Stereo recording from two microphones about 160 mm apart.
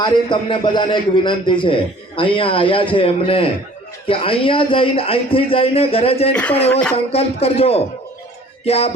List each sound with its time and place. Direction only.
0.0 s a man's voice: 30° left (ahead or behind)
6.3 s speech: 10° left (ahead or behind)
7.1 s a man's voice: 40° left (ahead or behind)